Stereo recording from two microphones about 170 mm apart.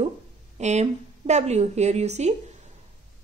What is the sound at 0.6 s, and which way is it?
Speech, 40° right (ahead or behind).